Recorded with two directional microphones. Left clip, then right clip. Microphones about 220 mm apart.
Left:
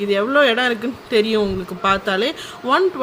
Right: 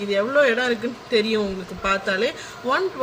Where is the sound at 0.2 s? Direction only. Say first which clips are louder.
Left 2 dB; 40° left (ahead or behind).